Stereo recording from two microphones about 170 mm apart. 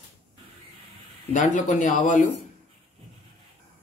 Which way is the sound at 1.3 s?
45° left (ahead or behind).